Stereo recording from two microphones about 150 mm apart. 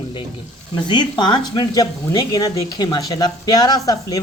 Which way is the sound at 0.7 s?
30° left (ahead or behind).